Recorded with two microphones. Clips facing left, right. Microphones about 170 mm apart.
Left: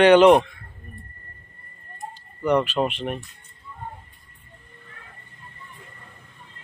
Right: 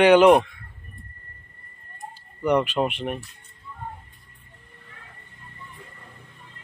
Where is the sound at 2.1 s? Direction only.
10° right (ahead or behind).